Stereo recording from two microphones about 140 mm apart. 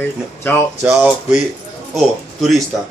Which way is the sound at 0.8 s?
5° right (ahead or behind).